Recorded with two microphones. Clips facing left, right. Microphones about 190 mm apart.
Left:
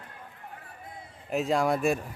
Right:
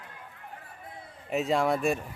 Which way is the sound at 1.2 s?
Centre (ahead or behind).